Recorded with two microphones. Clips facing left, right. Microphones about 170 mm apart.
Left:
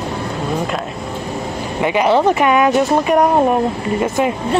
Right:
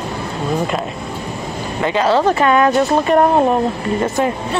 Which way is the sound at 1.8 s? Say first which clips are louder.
Left 1 dB; 15° left (ahead or behind).